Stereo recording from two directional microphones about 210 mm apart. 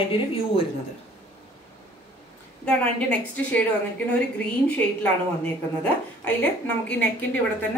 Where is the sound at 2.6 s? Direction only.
5° left (ahead or behind).